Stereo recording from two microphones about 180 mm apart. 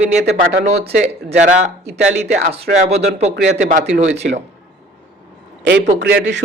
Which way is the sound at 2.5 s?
35° right (ahead or behind).